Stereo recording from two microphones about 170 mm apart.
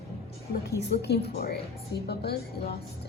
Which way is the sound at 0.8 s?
75° left (ahead or behind).